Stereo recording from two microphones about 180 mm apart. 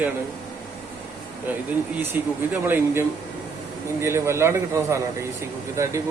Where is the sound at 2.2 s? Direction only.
10° right (ahead or behind).